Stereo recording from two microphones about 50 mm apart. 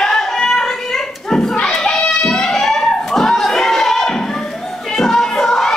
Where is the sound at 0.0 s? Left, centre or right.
Centre.